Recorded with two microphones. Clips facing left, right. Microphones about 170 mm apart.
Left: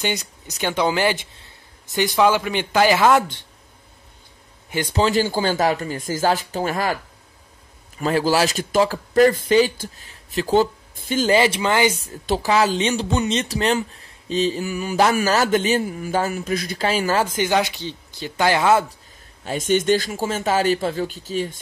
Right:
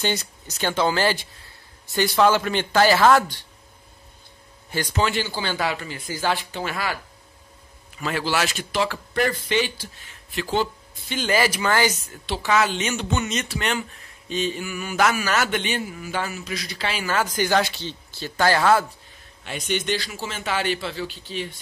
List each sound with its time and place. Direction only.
0.0 s speech: 15° left (ahead or behind)
4.6 s a man's voice: 20° left (ahead or behind)
4.9 s speech: 35° left (ahead or behind)
8.0 s a man's voice: 40° left (ahead or behind)
11.2 s speech: 25° left (ahead or behind)
12.1 s speech: 35° left (ahead or behind)
17.2 s speech: 25° left (ahead or behind)
19.4 s speech: 45° left (ahead or behind)